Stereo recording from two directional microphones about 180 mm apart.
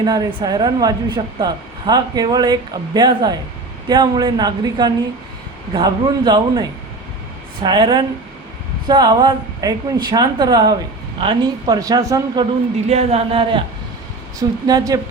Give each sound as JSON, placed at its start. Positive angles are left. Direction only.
{"t": 0.0, "sound": "a woman's voice", "side_deg": -25}
{"t": 12.9, "sound": "speech", "side_deg": -35}
{"t": 14.3, "sound": "a woman's voice", "side_deg": -20}